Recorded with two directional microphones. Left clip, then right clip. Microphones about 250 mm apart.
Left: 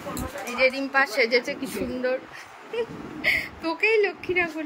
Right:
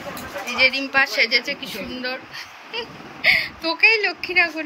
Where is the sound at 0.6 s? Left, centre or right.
Centre.